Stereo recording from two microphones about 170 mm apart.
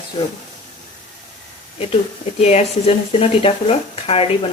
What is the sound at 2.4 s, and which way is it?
Speech, 40° left (ahead or behind).